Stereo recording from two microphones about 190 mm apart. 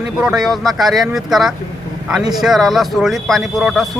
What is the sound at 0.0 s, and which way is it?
Speech, 5° right (ahead or behind).